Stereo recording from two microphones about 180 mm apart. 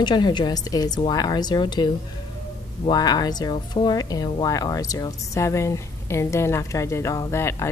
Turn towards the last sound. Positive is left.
turn(degrees=15)  # may be behind; listen again after turning